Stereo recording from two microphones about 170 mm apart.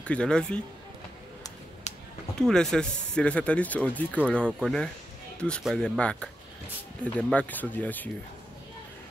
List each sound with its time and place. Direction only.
0.0 s speech: 5° left (ahead or behind)
1.9 s a sound: 40° left (ahead or behind)
2.3 s speech: 5° left (ahead or behind)